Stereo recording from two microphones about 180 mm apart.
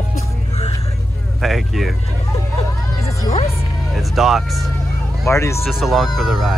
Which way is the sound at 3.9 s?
Centre (ahead or behind).